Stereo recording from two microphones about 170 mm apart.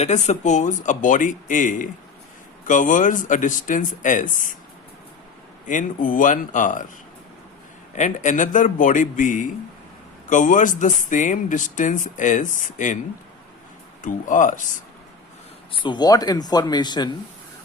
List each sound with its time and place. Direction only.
0.0 s speech: 40° left (ahead or behind)
5.6 s speech: 50° left (ahead or behind)
7.9 s speech: 45° left (ahead or behind)
14.0 s speech: 50° left (ahead or behind)
15.7 s speech: 30° left (ahead or behind)